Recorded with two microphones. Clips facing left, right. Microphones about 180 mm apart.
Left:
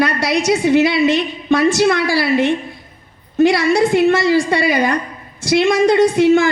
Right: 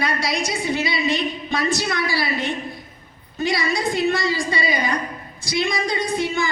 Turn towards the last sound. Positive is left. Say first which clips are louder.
# left 12 dB
turn(degrees=60)  # may be behind; listen again after turning